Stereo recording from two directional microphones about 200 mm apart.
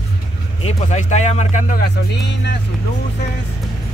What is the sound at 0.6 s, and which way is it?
Speech, 35° left (ahead or behind).